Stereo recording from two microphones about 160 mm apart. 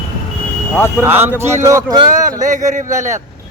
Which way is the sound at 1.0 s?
15° right (ahead or behind).